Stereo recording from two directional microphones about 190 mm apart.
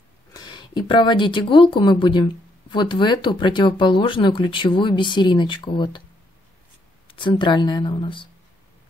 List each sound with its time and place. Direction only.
0.3 s speech: 20° left (ahead or behind)
7.1 s speech: 25° left (ahead or behind)